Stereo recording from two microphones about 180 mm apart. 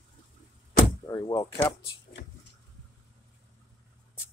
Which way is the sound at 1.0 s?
20° left (ahead or behind).